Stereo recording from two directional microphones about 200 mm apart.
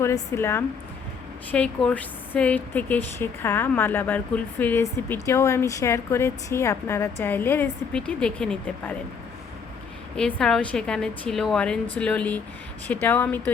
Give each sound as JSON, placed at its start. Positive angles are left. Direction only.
{"t": 0.0, "sound": "a woman's voice", "side_deg": 15}
{"t": 10.2, "sound": "a woman's voice", "side_deg": 5}